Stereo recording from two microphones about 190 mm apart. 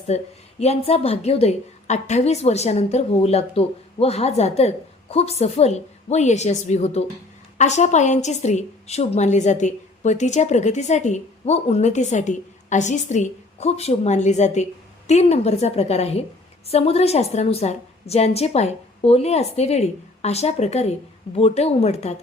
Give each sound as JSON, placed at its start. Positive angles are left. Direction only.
{"t": 0.1, "sound": "a woman's voice", "side_deg": 35}